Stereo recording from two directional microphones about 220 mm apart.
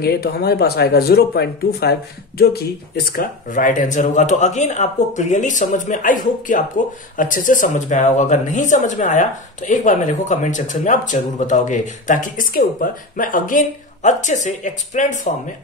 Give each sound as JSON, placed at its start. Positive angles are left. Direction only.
{"t": 0.0, "sound": "speech", "side_deg": 45}